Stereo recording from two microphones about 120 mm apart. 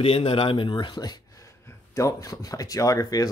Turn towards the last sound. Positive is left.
turn(degrees=30)  # may be behind; listen again after turning